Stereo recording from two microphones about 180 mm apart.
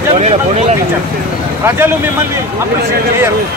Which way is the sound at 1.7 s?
15° right (ahead or behind).